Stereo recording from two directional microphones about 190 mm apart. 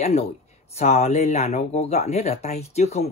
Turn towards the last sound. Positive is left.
turn(degrees=35)  # may be behind; listen again after turning